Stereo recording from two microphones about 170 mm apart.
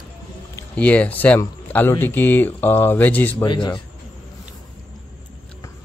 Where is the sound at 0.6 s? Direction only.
10° left (ahead or behind).